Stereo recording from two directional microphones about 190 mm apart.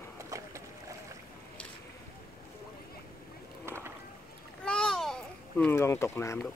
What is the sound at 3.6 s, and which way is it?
Rowboat, 15° right (ahead or behind).